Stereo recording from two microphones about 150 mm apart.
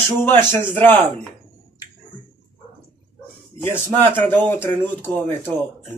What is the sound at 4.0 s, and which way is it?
Speech, 15° left (ahead or behind).